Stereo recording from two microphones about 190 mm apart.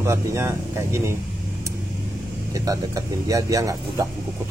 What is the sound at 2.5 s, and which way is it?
Speech, 20° right (ahead or behind).